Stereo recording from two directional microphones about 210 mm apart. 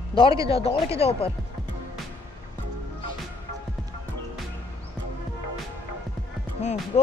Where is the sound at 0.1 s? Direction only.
25° left (ahead or behind).